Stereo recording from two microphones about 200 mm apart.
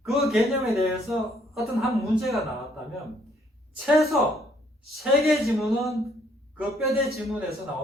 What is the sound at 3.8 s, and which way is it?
A man's voice, centre (ahead or behind).